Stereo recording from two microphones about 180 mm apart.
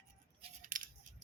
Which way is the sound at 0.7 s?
50° right (ahead or behind).